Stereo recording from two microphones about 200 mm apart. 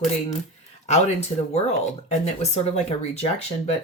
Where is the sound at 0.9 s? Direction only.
35° left (ahead or behind).